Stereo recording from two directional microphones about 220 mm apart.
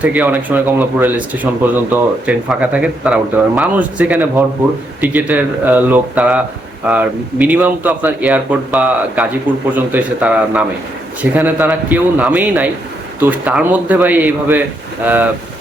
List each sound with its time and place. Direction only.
0.0 s speech: 5° right (ahead or behind)